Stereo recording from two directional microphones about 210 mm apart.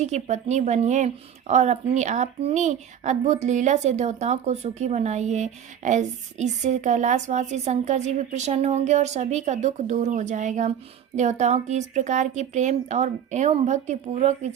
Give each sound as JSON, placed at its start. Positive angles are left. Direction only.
{"t": 0.0, "sound": "a woman's voice", "side_deg": -35}